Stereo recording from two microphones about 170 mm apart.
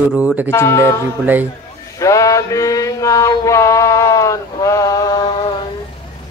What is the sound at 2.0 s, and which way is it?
Mantra, 20° left (ahead or behind).